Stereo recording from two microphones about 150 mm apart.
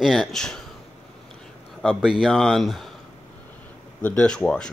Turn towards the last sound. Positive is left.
turn(degrees=5)  # may be behind; listen again after turning